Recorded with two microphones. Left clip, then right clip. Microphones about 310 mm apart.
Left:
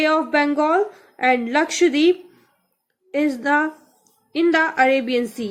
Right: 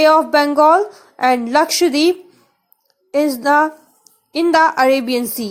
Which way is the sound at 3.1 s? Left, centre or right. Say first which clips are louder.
Right 6 dB; centre.